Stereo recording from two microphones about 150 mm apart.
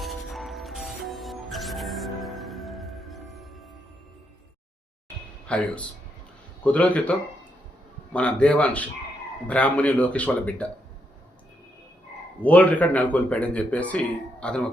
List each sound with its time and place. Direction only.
0.0 s music: centre (ahead or behind)
5.5 s speech: 10° left (ahead or behind)
8.1 s speech: 10° left (ahead or behind)
12.4 s speech: 10° left (ahead or behind)